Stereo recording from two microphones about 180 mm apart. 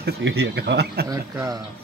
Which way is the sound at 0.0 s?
65° right (ahead or behind).